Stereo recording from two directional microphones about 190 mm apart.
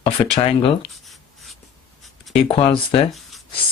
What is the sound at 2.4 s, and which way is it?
Speech, 30° left (ahead or behind).